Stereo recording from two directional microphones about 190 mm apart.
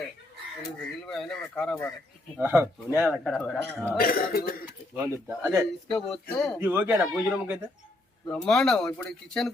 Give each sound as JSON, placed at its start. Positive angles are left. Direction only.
{"t": 1.0, "sound": "speech", "side_deg": 5}
{"t": 2.4, "sound": "speech", "side_deg": -10}
{"t": 3.2, "sound": "speech", "side_deg": 5}
{"t": 3.9, "sound": "speech", "side_deg": 50}
{"t": 4.9, "sound": "speech", "side_deg": -10}
{"t": 5.9, "sound": "speech", "side_deg": 5}
{"t": 6.6, "sound": "speech", "side_deg": -10}
{"t": 8.3, "sound": "speech", "side_deg": 5}